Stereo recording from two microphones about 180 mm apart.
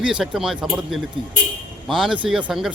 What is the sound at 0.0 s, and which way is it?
Speech, 5° right (ahead or behind).